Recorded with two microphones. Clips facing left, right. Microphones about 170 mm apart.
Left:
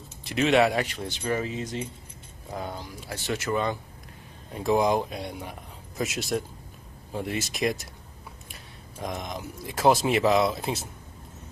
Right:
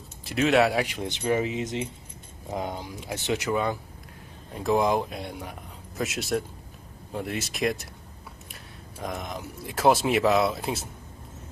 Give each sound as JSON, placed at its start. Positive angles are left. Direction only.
{"t": 0.2, "sound": "speech", "side_deg": 0}
{"t": 0.8, "sound": "speech", "side_deg": -15}
{"t": 9.0, "sound": "speech", "side_deg": 0}